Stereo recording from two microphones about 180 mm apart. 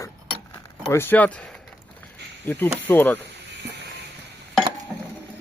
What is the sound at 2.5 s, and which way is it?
Speech, 10° left (ahead or behind).